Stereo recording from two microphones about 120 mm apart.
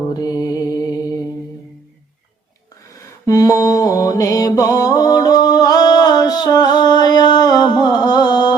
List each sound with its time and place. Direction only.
0.1 s mantra: 35° left (ahead or behind)
3.2 s mantra: 30° left (ahead or behind)